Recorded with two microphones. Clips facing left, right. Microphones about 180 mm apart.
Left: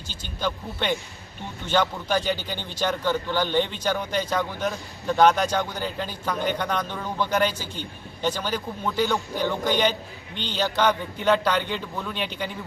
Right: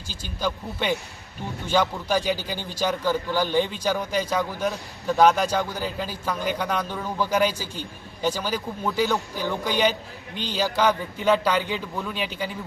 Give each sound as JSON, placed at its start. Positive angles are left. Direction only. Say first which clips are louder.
{"t": 0.4, "sound": "a man's voice", "louder": "right 1 dB", "side_deg": -5}